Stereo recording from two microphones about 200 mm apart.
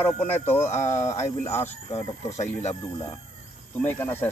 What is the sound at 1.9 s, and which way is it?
Speech, 35° left (ahead or behind).